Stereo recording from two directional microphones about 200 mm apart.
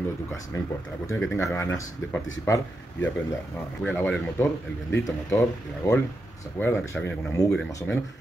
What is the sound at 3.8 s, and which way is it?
Speech, 5° left (ahead or behind).